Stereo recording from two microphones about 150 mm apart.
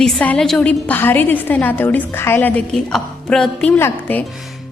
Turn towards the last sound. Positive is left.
turn(degrees=10)  # may be behind; listen again after turning